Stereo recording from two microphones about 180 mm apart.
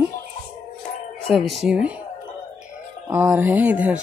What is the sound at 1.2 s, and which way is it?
Speech, centre (ahead or behind).